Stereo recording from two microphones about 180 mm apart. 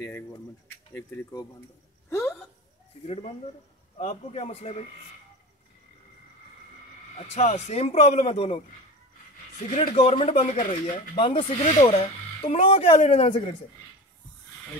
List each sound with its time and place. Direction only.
0.9 s speech: 15° left (ahead or behind)
2.0 s a sound: 15° left (ahead or behind)
3.1 s speech: 35° left (ahead or behind)
7.2 s speech: 40° left (ahead or behind)
9.7 s speech: 50° left (ahead or behind)
9.9 s speech: 30° left (ahead or behind)
11.1 s speech: 30° left (ahead or behind)